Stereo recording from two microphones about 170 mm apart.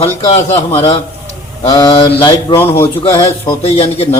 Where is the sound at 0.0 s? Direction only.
40° left (ahead or behind).